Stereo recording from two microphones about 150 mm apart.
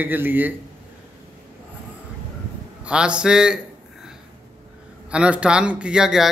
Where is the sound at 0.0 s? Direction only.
10° right (ahead or behind).